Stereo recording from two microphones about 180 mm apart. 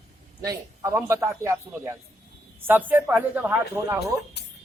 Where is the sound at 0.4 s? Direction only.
15° right (ahead or behind).